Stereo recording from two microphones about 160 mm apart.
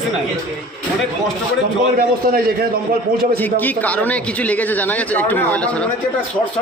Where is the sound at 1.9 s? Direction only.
65° right (ahead or behind).